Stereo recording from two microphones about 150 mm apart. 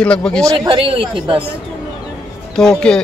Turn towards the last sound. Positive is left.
turn(degrees=5)  # may be behind; listen again after turning